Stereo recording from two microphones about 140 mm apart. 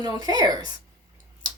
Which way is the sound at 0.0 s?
25° right (ahead or behind).